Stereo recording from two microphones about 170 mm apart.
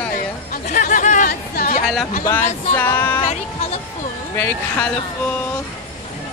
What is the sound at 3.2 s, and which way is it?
Speech, 40° left (ahead or behind).